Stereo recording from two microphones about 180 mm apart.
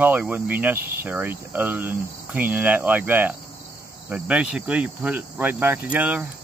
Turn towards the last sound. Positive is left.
turn(degrees=-10)  # may be behind; listen again after turning